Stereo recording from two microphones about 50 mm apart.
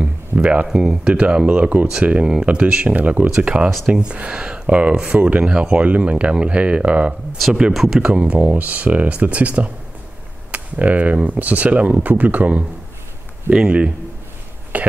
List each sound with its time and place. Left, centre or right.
0.0 s a sound: right
0.7 s speech: centre
1.5 s speech: right
1.9 s speech: right
5.4 s speech: centre
7.7 s speech: centre
8.0 s speech: right
14.7 s speech: right